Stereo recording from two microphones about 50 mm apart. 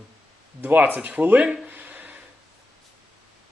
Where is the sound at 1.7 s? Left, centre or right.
Right.